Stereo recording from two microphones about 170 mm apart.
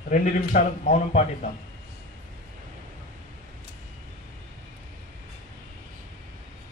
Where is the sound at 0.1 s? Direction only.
45° left (ahead or behind).